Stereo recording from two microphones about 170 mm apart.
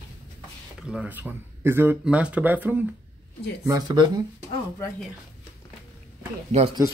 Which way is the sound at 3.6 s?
20° right (ahead or behind).